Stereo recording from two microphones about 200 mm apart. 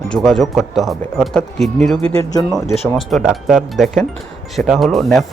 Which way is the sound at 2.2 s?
15° left (ahead or behind).